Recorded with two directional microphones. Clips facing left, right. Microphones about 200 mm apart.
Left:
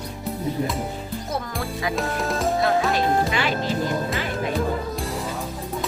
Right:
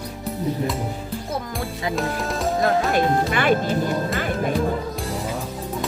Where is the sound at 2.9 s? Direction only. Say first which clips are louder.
Right 1 dB; 55° right (ahead or behind).